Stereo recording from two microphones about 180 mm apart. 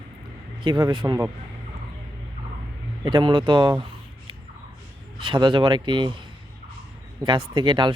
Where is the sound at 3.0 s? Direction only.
25° right (ahead or behind).